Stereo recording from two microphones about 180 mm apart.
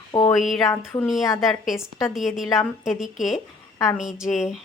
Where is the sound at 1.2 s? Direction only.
15° left (ahead or behind).